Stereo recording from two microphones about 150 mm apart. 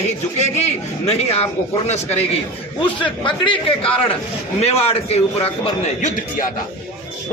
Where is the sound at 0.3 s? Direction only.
50° left (ahead or behind).